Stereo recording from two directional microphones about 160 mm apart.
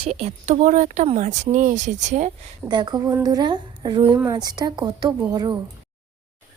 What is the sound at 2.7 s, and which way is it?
Speech, 25° right (ahead or behind).